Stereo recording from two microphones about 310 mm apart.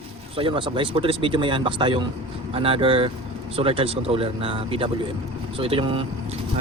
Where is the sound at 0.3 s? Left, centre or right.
Centre.